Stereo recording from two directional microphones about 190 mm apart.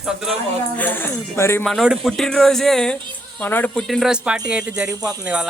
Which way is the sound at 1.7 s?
Centre (ahead or behind).